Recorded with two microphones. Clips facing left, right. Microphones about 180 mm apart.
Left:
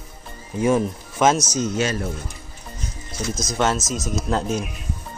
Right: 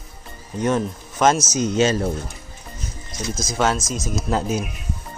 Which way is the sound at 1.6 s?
20° right (ahead or behind).